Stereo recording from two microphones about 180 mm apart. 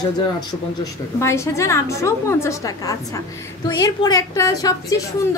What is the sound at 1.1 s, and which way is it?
A woman's voice, 15° left (ahead or behind).